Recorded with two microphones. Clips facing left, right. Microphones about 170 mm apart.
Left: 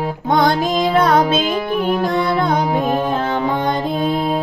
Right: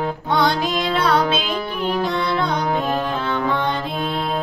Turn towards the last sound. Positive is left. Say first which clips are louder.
# left 4 dB
turn(degrees=50)  # may be behind; listen again after turning